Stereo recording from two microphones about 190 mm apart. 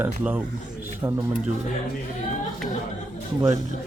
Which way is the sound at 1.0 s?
20° right (ahead or behind).